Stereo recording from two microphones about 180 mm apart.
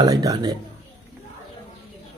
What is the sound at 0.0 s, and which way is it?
Speech, 20° right (ahead or behind).